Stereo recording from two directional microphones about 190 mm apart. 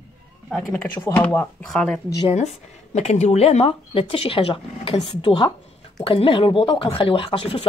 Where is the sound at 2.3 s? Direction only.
35° left (ahead or behind).